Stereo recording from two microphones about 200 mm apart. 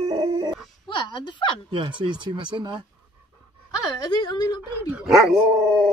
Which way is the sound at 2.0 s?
25° right (ahead or behind).